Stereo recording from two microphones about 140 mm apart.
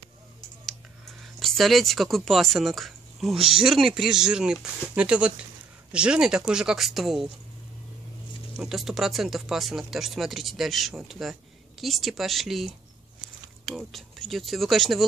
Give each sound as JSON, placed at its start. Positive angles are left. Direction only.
{"t": 1.2, "sound": "speech", "side_deg": 0}
{"t": 8.5, "sound": "speech", "side_deg": -5}